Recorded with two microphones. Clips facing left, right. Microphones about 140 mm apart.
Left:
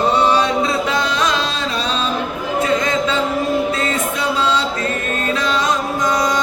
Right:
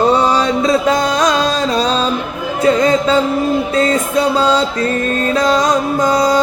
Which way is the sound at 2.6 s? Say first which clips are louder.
Right 8 dB; 35° right (ahead or behind).